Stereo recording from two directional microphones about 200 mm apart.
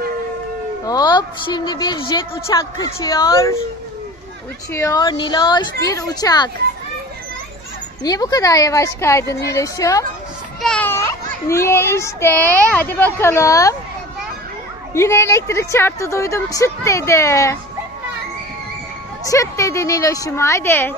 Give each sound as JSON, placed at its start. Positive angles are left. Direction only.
{"t": 0.8, "sound": "speech", "side_deg": 20}
{"t": 4.7, "sound": "speech", "side_deg": 15}
{"t": 8.0, "sound": "a child's voice", "side_deg": 20}
{"t": 10.6, "sound": "a child's voice", "side_deg": 5}
{"t": 15.0, "sound": "a child's voice", "side_deg": 15}
{"t": 19.2, "sound": "a child's voice", "side_deg": 15}